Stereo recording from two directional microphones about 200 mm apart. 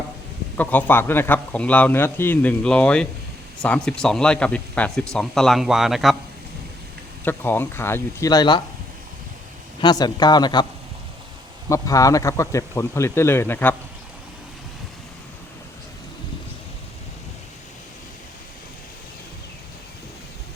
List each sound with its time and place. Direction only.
0.5 s a man's voice: 10° left (ahead or behind)
7.3 s a man's voice: 10° left (ahead or behind)
9.8 s speech: 20° left (ahead or behind)
11.7 s a man's voice: 15° left (ahead or behind)